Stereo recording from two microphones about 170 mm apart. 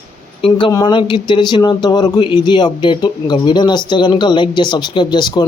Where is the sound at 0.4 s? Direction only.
25° left (ahead or behind).